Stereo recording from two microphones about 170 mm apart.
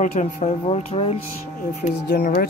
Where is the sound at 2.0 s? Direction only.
60° left (ahead or behind).